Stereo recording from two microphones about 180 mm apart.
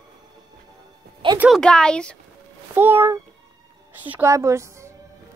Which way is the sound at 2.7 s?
10° right (ahead or behind).